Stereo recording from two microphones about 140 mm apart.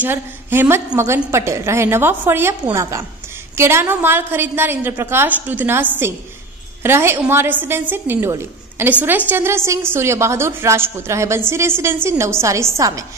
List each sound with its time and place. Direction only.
0.0 s a woman's voice: 15° right (ahead or behind)